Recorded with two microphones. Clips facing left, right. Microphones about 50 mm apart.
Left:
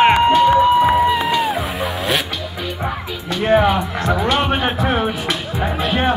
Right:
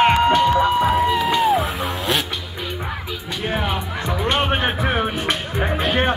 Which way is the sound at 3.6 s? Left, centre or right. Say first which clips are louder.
Left 7 dB; centre.